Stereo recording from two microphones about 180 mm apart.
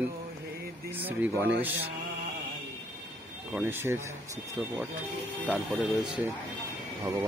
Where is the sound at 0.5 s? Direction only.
60° right (ahead or behind).